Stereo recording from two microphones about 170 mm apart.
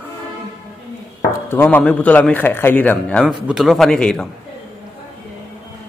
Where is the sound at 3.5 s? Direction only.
Centre (ahead or behind).